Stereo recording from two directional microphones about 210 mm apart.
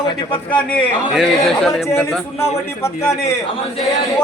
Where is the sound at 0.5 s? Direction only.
5° left (ahead or behind).